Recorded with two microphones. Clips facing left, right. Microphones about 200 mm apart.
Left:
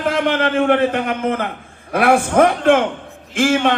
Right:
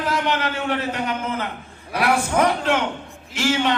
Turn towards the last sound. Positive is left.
turn(degrees=55)  # may be behind; listen again after turning